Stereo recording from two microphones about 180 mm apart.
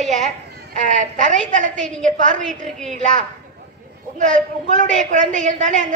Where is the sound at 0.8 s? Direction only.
45° right (ahead or behind).